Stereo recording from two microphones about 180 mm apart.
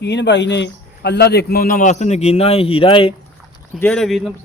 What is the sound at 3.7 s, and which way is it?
Speech, 5° left (ahead or behind).